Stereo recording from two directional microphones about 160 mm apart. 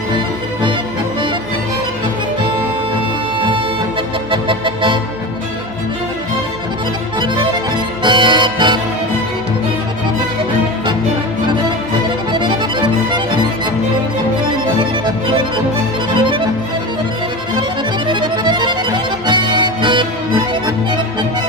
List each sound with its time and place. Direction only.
4.3 s music: 30° right (ahead or behind)
8.0 s music: 30° right (ahead or behind)
12.3 s music: 30° right (ahead or behind)
14.8 s music: 30° right (ahead or behind)
18.1 s accordion: 30° right (ahead or behind)